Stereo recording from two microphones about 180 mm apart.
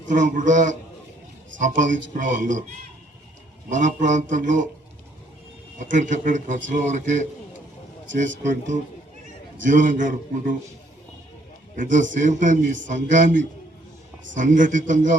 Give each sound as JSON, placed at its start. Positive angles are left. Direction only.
{"t": 0.1, "sound": "a man's voice", "side_deg": -45}
{"t": 3.7, "sound": "a man's voice", "side_deg": -45}
{"t": 5.8, "sound": "a man's voice", "side_deg": -45}
{"t": 8.4, "sound": "a man's voice", "side_deg": -45}
{"t": 11.8, "sound": "a man's voice", "side_deg": -45}